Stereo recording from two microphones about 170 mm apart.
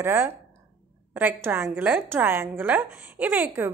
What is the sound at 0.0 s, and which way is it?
A woman's voice, 15° right (ahead or behind).